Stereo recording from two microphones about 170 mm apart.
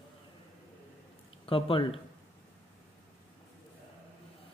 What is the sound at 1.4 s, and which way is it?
Speech, 30° left (ahead or behind).